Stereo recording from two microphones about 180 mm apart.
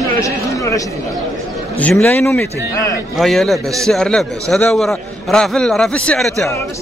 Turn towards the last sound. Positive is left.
turn(degrees=5)  # may be behind; listen again after turning